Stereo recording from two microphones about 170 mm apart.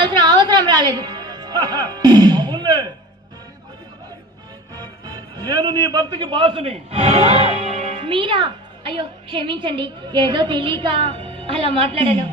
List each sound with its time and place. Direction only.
0.0 s music: 25° right (ahead or behind)
4.7 s a man's voice: 25° right (ahead or behind)